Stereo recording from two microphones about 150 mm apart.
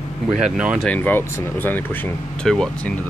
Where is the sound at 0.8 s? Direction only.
10° left (ahead or behind).